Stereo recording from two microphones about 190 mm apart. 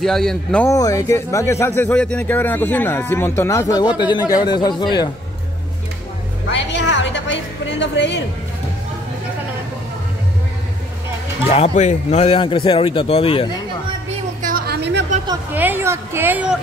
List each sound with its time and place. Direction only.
0.0 s speech: centre (ahead or behind)
0.7 s speech: 15° left (ahead or behind)
6.5 s a sound: 70° left (ahead or behind)
11.4 s a man's voice: 35° left (ahead or behind)
14.4 s a sound: 55° right (ahead or behind)
15.5 s a woman's voice: 10° right (ahead or behind)